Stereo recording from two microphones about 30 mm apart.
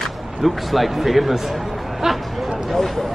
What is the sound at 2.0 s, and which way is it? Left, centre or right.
Speech, centre.